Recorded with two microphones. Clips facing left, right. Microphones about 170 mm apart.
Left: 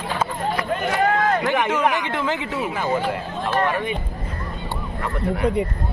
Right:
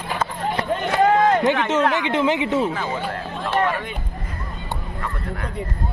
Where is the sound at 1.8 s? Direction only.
15° left (ahead or behind).